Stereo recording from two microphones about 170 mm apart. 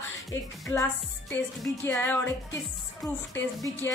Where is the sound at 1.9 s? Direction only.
10° left (ahead or behind).